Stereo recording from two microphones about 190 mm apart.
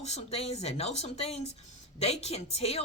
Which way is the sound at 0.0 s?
35° left (ahead or behind).